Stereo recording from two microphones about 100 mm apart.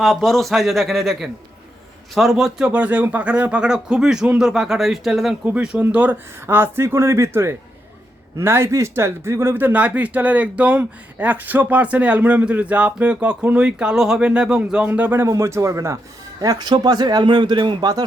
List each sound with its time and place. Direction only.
0.0 s speech: centre (ahead or behind)
5.5 s a man's voice: 15° right (ahead or behind); by 18.0 s 45° right (ahead or behind)